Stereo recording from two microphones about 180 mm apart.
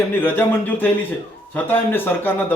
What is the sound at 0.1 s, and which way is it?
A man's voice, 10° left (ahead or behind).